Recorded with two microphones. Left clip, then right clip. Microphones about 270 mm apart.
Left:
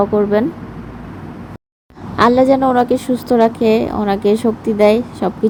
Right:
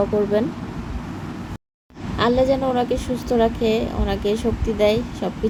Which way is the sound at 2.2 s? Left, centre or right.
Centre.